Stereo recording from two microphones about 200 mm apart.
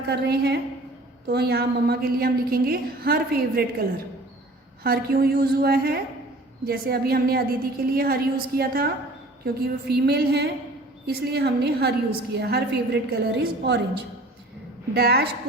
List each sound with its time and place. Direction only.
0.1 s a woman's voice: 55° right (ahead or behind)
4.8 s a woman's voice: 50° right (ahead or behind)
14.9 s a woman's voice: 50° right (ahead or behind)